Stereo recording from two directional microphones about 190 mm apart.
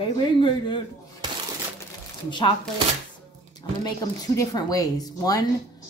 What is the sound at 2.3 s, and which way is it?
Speech, 25° left (ahead or behind).